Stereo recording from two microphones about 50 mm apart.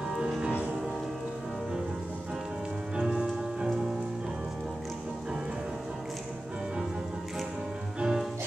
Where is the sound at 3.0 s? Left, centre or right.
Centre.